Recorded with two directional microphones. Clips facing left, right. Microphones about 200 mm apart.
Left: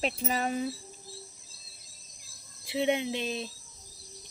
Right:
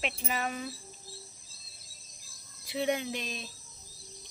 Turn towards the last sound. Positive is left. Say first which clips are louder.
# left 5 dB
turn(degrees=25)  # may be behind; listen again after turning